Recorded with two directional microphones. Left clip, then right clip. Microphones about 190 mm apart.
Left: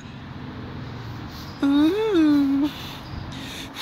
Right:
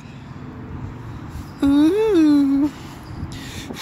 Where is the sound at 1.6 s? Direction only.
15° right (ahead or behind).